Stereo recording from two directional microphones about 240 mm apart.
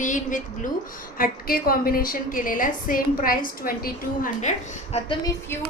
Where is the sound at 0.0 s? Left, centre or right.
Left.